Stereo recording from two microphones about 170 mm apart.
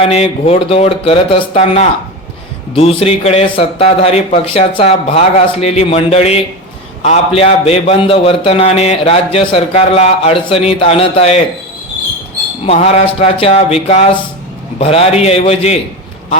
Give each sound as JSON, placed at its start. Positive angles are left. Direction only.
{"t": 0.0, "sound": "a man's voice", "side_deg": 35}
{"t": 12.6, "sound": "a man's voice", "side_deg": 40}